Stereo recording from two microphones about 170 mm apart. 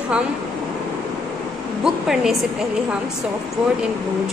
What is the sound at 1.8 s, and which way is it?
Speech, 5° right (ahead or behind).